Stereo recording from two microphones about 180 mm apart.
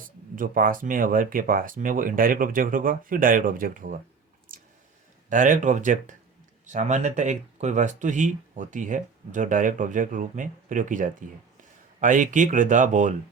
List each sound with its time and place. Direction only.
0.0 s speech: 50° right (ahead or behind)
4.5 s a sound: 50° right (ahead or behind)
5.3 s speech: 45° right (ahead or behind)